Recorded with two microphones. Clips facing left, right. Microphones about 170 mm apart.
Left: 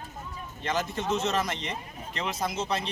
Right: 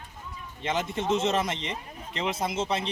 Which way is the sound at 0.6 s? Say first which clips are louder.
Right 1 dB; 25° right (ahead or behind).